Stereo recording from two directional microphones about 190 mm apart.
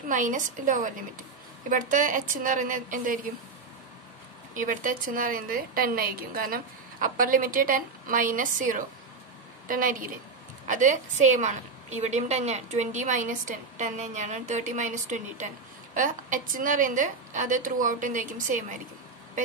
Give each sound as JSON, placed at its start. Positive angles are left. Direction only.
{"t": 0.1, "sound": "a woman's voice", "side_deg": -45}
{"t": 4.6, "sound": "a woman's voice", "side_deg": -45}